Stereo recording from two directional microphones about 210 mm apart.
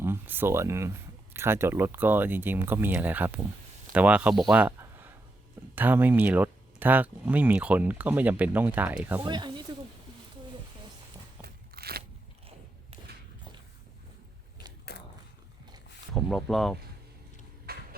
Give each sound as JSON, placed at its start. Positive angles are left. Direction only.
{"t": 0.0, "sound": "speech", "side_deg": -10}
{"t": 4.5, "sound": "a sound", "side_deg": -10}
{"t": 5.7, "sound": "speech", "side_deg": -10}
{"t": 9.2, "sound": "speech", "side_deg": -20}
{"t": 11.4, "sound": "crunch", "side_deg": -50}
{"t": 14.9, "sound": "biting", "side_deg": 50}
{"t": 16.1, "sound": "speech", "side_deg": 0}
{"t": 17.7, "sound": "a sound", "side_deg": -50}